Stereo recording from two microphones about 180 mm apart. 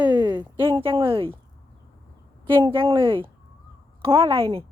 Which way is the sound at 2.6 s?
30° right (ahead or behind).